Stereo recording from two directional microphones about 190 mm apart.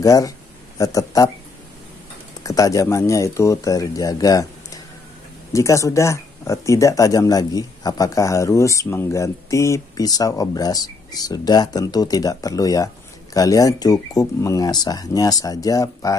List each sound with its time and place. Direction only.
0.0 s speech: 20° left (ahead or behind)
2.4 s speech: 15° left (ahead or behind)